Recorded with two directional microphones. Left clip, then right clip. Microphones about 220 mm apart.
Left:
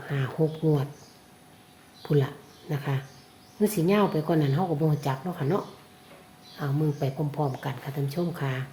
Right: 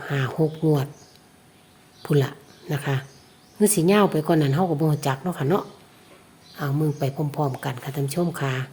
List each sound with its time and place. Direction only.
0.0 s speech: 40° right (ahead or behind)
2.0 s a woman's voice: 40° right (ahead or behind)